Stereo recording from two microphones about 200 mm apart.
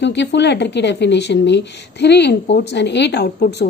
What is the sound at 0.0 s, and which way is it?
A woman's voice, 60° left (ahead or behind).